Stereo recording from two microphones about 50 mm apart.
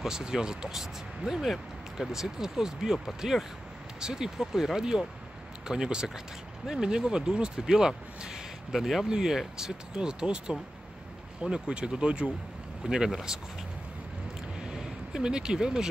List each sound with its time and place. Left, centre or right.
0.0 s speech: centre
14.6 s vehicle: centre